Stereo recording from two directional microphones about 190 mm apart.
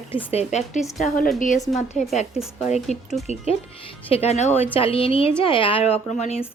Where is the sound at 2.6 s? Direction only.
35° left (ahead or behind).